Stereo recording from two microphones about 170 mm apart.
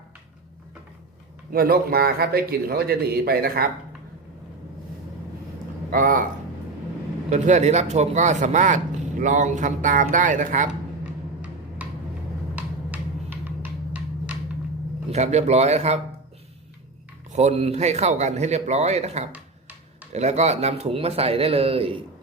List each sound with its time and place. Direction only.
1.5 s a man's voice: 60° right (ahead or behind)
5.9 s speech: 50° right (ahead or behind)
7.3 s speech: 45° right (ahead or behind)
11.0 s a sound: 10° right (ahead or behind)
15.1 s speech: 40° right (ahead or behind)
17.3 s speech: 40° right (ahead or behind)
19.3 s a sound: 10° right (ahead or behind)
20.1 s speech: 40° right (ahead or behind)